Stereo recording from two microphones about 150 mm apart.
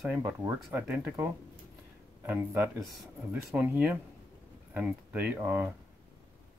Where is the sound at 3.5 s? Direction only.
10° right (ahead or behind).